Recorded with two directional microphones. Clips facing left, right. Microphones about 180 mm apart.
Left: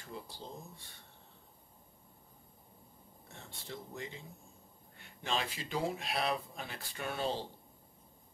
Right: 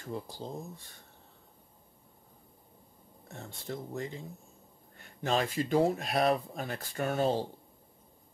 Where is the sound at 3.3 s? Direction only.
45° right (ahead or behind).